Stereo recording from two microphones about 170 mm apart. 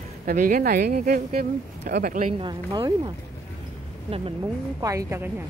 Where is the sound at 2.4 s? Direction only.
25° right (ahead or behind).